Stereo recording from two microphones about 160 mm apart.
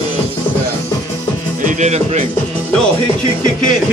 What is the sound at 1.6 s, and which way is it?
Speech, 50° right (ahead or behind).